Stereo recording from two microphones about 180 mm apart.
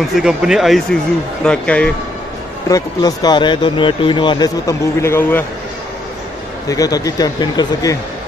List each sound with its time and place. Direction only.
0.1 s speech: 5° right (ahead or behind)
2.7 s speech: 20° left (ahead or behind)
6.7 s speech: 20° left (ahead or behind)